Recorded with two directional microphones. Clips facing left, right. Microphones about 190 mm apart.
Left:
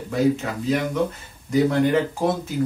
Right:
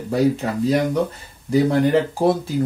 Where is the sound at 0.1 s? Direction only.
35° right (ahead or behind).